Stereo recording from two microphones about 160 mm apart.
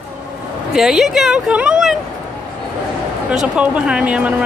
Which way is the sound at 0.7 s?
5° right (ahead or behind).